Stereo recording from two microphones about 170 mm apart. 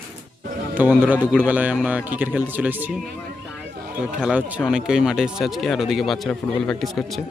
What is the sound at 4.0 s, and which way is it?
Speech, 5° right (ahead or behind).